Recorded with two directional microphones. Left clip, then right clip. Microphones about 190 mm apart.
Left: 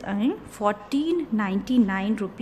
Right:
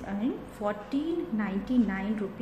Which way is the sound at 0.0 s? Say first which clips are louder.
Left 6 dB; 45° left (ahead or behind).